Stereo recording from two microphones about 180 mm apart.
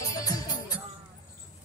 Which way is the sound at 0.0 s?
20° left (ahead or behind).